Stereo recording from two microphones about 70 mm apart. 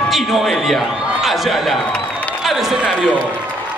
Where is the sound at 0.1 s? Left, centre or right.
Centre.